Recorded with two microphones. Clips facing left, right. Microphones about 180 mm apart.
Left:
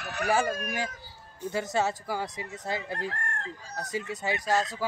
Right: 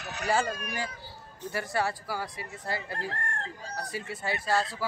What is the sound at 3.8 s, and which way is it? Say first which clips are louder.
Speech: left 4 dB; 20° left (ahead or behind).